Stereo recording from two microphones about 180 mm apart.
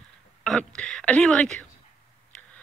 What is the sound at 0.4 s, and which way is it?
Speech, 5° left (ahead or behind).